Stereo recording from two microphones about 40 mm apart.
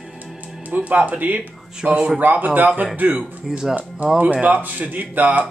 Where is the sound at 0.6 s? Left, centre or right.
Right.